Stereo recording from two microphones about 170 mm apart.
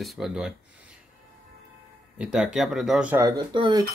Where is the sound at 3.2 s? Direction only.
25° right (ahead or behind).